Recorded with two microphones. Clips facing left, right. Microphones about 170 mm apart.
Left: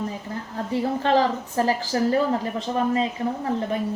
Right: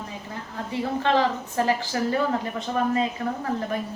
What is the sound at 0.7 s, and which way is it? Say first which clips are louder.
A woman's voice: left 2 dB; 40° left (ahead or behind).